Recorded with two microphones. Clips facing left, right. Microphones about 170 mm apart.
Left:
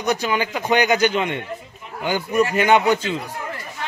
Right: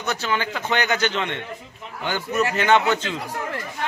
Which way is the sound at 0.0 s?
15° left (ahead or behind).